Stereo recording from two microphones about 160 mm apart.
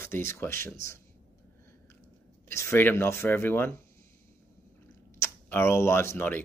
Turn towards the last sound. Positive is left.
turn(degrees=15)  # may be behind; listen again after turning